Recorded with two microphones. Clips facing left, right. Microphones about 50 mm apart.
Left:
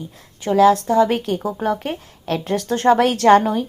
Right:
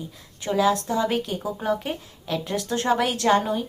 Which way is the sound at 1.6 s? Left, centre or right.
Left.